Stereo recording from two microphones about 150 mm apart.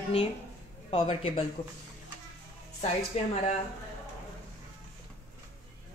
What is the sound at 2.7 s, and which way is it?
Speech, 45° left (ahead or behind).